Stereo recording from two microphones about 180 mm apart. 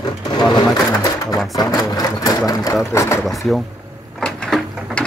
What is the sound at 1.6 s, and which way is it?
Speech, 20° left (ahead or behind).